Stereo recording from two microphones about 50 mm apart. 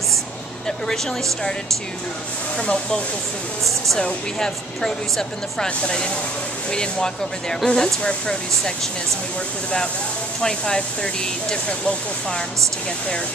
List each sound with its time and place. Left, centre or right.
0.7 s speech: centre
2.5 s speech: left
4.0 s speech: centre
10.4 s speech: centre